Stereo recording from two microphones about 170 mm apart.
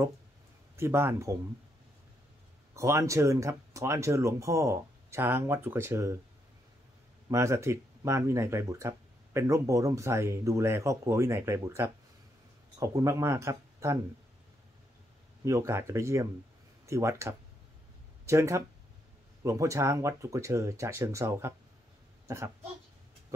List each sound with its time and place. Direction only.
0.7 s speech: 15° right (ahead or behind)
2.7 s speech: 15° right (ahead or behind)
7.2 s speech: 15° right (ahead or behind)
15.4 s speech: 20° right (ahead or behind)